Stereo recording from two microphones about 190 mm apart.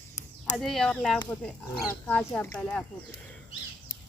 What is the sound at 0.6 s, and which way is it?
Speech, centre (ahead or behind).